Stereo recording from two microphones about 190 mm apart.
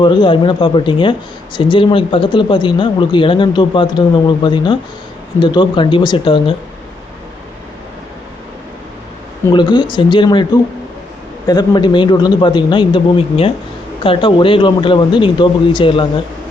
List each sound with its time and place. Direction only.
0.0 s speech: 25° left (ahead or behind)
9.5 s speech: 25° left (ahead or behind)
11.4 s speech: 25° left (ahead or behind)